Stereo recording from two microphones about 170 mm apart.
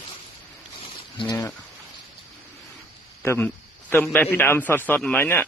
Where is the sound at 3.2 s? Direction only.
15° left (ahead or behind).